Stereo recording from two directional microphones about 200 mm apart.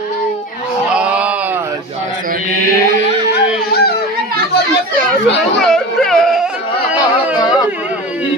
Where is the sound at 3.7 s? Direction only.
55° left (ahead or behind).